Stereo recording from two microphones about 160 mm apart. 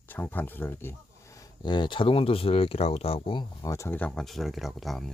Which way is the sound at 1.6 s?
30° left (ahead or behind).